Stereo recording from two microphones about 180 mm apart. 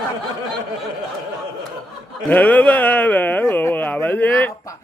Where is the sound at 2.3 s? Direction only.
10° left (ahead or behind).